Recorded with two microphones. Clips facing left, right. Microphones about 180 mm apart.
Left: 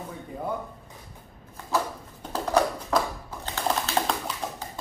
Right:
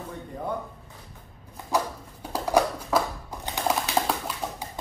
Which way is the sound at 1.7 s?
15° right (ahead or behind).